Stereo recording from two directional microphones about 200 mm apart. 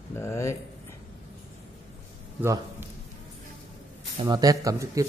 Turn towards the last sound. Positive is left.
turn(degrees=-15)  # may be behind; listen again after turning